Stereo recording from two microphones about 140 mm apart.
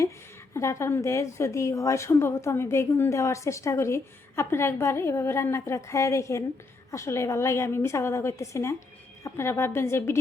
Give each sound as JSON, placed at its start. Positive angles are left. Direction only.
{"t": 0.5, "sound": "a woman's voice", "side_deg": 20}